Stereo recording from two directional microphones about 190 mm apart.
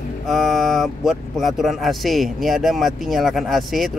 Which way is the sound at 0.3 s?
Centre (ahead or behind).